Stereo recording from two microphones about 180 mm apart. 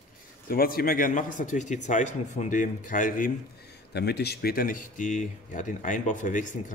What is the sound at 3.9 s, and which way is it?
Speech, 65° left (ahead or behind).